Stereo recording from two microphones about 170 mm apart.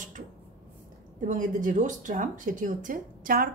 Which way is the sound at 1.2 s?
50° right (ahead or behind).